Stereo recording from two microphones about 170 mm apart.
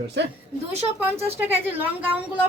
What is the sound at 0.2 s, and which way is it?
Speech, 90° right.